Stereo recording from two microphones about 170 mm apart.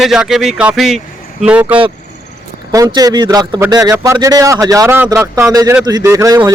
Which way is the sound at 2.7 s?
20° right (ahead or behind).